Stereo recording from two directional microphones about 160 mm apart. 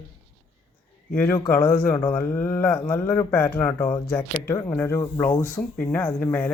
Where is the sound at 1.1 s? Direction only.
10° left (ahead or behind).